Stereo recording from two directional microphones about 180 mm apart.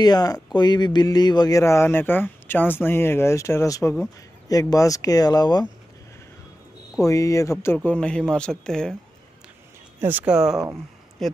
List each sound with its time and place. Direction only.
0.0 s speech: 20° left (ahead or behind)
7.0 s speech: 15° left (ahead or behind)
9.9 s speech: 10° right (ahead or behind)